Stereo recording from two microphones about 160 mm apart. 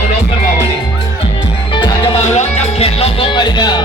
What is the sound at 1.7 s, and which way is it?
Music, 30° left (ahead or behind).